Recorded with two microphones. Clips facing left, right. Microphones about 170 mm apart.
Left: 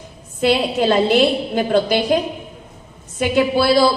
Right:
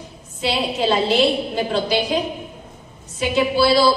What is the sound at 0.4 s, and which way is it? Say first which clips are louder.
A woman's voice: left 5 dB; 50° left (ahead or behind).